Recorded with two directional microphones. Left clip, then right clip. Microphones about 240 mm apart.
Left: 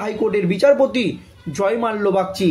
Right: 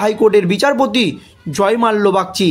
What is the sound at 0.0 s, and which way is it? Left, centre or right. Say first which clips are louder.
A man's voice: right 8 dB; right.